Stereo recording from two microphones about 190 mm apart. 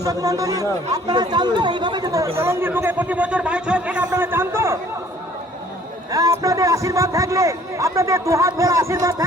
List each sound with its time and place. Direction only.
0.0 s speech: 20° right (ahead or behind)
6.1 s speech: 20° right (ahead or behind)